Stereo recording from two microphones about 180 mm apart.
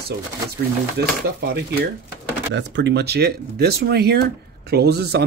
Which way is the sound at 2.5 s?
80° right.